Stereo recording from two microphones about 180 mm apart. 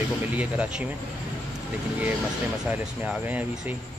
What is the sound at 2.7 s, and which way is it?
Speech, 10° right (ahead or behind).